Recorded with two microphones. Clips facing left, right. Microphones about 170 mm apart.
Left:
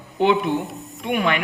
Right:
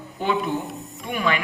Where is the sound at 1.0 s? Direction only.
60° left (ahead or behind).